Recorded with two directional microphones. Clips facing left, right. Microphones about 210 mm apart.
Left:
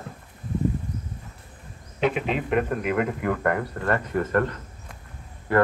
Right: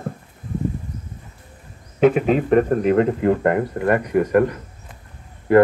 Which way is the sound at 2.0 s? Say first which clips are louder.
Right 9 dB; 45° right (ahead or behind).